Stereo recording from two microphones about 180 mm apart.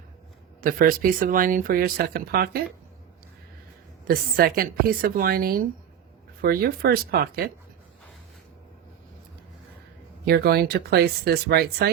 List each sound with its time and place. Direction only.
0.6 s speech: 50° right (ahead or behind)
4.0 s a woman's voice: 55° right (ahead or behind)
10.2 s a woman's voice: 60° right (ahead or behind)